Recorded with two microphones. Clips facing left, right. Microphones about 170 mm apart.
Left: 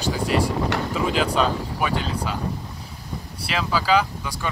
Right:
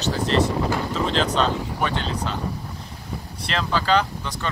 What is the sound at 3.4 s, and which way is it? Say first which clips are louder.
Speech: even; 5° left (ahead or behind).